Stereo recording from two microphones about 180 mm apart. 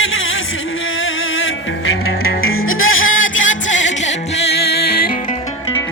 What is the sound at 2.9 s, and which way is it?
Music, 90° left.